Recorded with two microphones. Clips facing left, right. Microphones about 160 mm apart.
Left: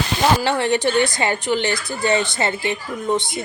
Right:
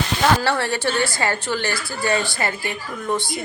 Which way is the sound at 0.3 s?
15° left (ahead or behind).